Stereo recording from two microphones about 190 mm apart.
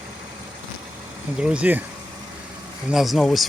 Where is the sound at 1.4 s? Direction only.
5° right (ahead or behind).